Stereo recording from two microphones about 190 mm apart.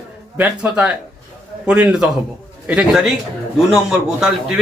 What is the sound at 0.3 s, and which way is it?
A man's voice, 5° right (ahead or behind).